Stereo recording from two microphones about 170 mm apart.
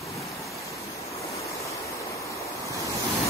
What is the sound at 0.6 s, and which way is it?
Waves, 20° left (ahead or behind).